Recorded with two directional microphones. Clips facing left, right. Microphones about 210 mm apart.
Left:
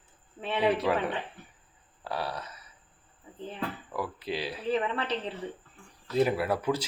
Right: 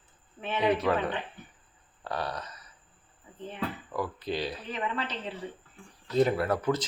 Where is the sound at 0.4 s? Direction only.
30° left (ahead or behind).